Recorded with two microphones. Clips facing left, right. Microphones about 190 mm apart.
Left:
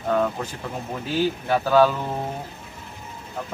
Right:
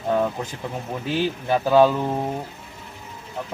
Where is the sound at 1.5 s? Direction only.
15° right (ahead or behind).